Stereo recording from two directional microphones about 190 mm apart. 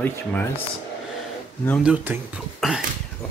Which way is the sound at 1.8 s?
10° right (ahead or behind).